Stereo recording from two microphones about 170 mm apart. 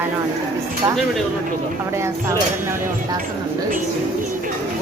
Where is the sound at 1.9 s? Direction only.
15° right (ahead or behind).